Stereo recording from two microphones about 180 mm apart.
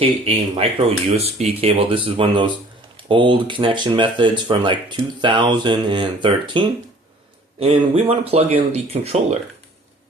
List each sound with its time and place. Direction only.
0.0 s speech: 30° right (ahead or behind)